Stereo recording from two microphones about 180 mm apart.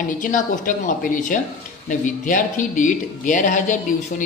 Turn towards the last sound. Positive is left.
turn(degrees=45)  # may be behind; listen again after turning